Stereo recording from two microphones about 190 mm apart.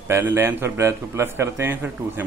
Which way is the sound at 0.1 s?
10° right (ahead or behind).